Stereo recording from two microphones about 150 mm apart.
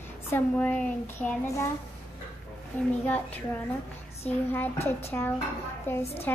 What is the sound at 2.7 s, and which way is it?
Speech, 15° left (ahead or behind).